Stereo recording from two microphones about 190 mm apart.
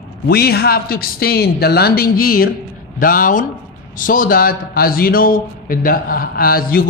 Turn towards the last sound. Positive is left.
turn(degrees=50)  # may be behind; listen again after turning